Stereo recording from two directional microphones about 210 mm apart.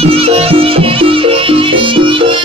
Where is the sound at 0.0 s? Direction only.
25° right (ahead or behind).